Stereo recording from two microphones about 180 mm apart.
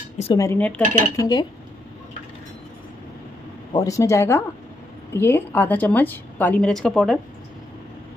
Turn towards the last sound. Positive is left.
turn(degrees=5)  # may be behind; listen again after turning